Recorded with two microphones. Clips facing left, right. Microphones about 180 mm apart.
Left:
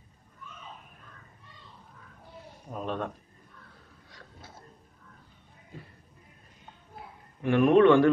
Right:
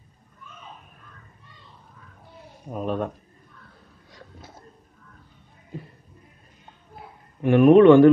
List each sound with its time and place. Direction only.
2.7 s speech: 10° right (ahead or behind)
7.4 s a man's voice: 20° right (ahead or behind)